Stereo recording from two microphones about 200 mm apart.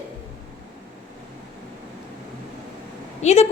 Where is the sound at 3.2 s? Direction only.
35° left (ahead or behind).